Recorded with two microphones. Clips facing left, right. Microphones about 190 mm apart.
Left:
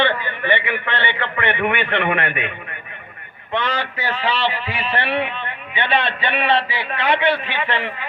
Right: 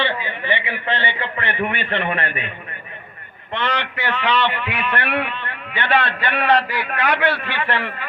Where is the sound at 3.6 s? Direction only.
60° right (ahead or behind).